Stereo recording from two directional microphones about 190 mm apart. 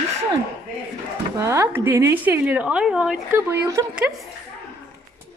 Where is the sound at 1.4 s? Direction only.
15° right (ahead or behind).